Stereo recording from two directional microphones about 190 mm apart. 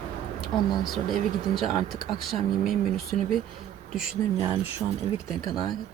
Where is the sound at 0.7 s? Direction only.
Centre (ahead or behind).